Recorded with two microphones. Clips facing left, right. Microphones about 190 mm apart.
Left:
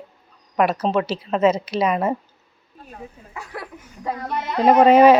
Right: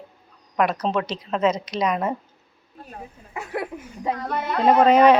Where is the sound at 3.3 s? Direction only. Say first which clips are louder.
Right 7 dB; 20° right (ahead or behind).